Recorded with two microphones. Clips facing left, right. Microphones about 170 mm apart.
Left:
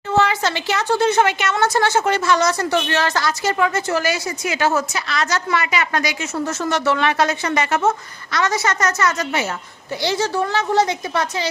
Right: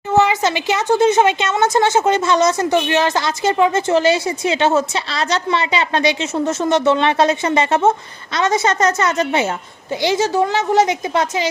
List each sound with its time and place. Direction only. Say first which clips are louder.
0.1 s a woman's voice: right 3 dB; 20° right (ahead or behind)